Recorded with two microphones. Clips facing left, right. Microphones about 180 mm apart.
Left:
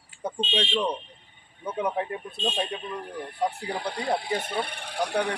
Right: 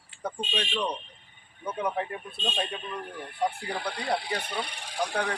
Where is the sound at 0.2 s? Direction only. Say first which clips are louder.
Left 4 dB; 25° left (ahead or behind).